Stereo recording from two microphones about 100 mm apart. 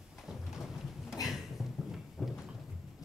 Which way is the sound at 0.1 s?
5° right (ahead or behind).